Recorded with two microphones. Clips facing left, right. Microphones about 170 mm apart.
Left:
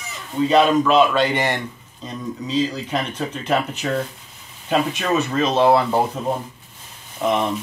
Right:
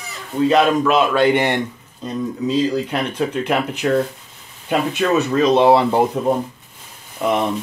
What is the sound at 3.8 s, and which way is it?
Speech, centre (ahead or behind).